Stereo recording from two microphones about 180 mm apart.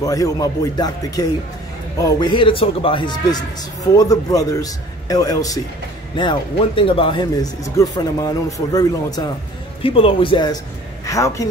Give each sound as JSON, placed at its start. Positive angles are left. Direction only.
{"t": 0.0, "sound": "a man's voice", "side_deg": 20}
{"t": 9.8, "sound": "a man's voice", "side_deg": 30}